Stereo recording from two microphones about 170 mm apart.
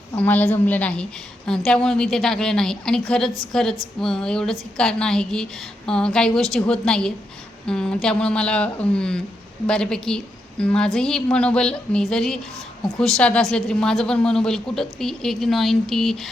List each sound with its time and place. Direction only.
0.2 s a woman's voice: 10° left (ahead or behind)